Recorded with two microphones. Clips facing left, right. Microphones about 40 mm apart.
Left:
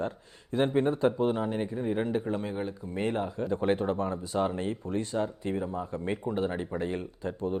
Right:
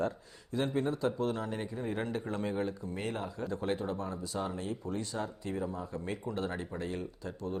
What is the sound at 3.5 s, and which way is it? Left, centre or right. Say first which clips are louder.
Speech: left 7 dB; left.